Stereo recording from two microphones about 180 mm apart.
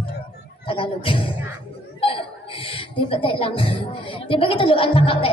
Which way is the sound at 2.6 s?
30° left (ahead or behind).